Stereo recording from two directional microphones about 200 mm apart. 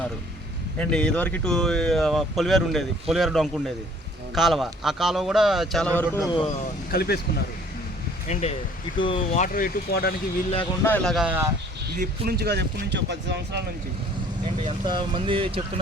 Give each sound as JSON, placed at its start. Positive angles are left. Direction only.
{"t": 0.8, "sound": "speech", "side_deg": 5}
{"t": 6.9, "sound": "speech", "side_deg": 50}
{"t": 8.3, "sound": "speech", "side_deg": 35}
{"t": 10.8, "sound": "speech", "side_deg": 5}
{"t": 11.9, "sound": "speech", "side_deg": -50}
{"t": 14.8, "sound": "speech", "side_deg": -25}